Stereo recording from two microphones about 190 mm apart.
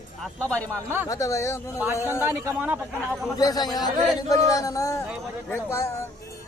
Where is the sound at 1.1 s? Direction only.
15° left (ahead or behind).